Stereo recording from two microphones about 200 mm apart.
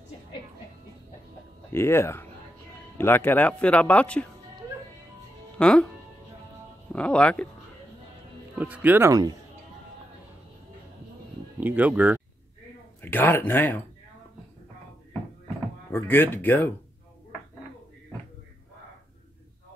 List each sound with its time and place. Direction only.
1.7 s speech: 10° left (ahead or behind)
5.6 s speech: 5° left (ahead or behind)
6.9 s speech: 5° left (ahead or behind)
8.5 s speech: 10° right (ahead or behind)
11.6 s speech: 10° right (ahead or behind)
13.0 s speech: 10° left (ahead or behind)
15.9 s speech: 10° left (ahead or behind)